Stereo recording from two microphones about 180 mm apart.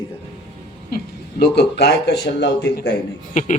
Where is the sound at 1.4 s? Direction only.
70° left (ahead or behind).